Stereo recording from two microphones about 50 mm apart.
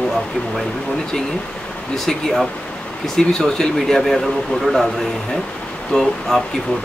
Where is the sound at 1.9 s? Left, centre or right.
Centre.